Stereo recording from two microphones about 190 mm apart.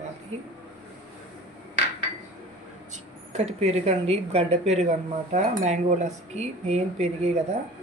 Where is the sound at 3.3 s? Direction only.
35° right (ahead or behind).